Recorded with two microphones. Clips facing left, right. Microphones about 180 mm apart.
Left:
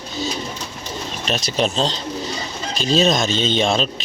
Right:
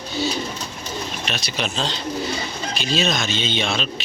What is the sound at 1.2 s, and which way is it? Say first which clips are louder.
A man's voice: left 10 dB; 35° left (ahead or behind).